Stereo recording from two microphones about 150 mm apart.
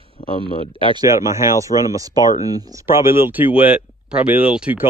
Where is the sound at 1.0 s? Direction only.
20° right (ahead or behind).